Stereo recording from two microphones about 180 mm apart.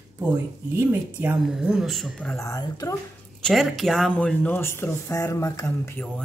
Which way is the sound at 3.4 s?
Centre (ahead or behind).